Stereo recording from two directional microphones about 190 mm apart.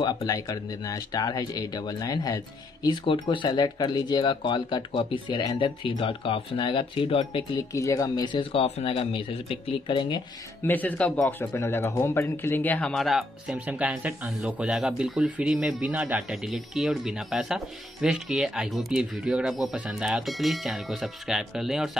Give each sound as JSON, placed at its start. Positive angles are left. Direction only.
{"t": 0.0, "sound": "speech", "side_deg": 20}
{"t": 7.7, "sound": "speech", "side_deg": 15}
{"t": 10.6, "sound": "speech", "side_deg": 10}